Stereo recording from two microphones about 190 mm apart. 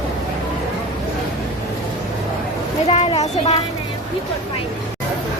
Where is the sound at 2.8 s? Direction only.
30° left (ahead or behind).